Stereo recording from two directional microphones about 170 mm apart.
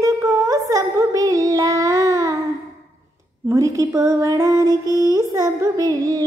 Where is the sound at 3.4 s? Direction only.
20° right (ahead or behind).